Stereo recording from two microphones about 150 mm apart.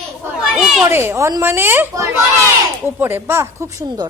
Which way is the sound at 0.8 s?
15° right (ahead or behind).